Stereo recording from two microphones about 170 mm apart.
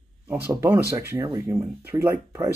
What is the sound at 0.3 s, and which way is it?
Speech, 15° right (ahead or behind).